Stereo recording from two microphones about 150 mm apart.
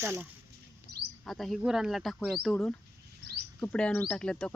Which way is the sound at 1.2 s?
Centre (ahead or behind).